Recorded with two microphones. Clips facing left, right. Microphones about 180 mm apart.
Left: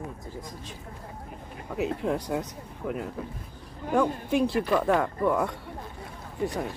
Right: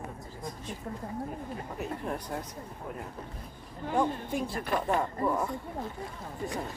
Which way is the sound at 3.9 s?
75° left (ahead or behind).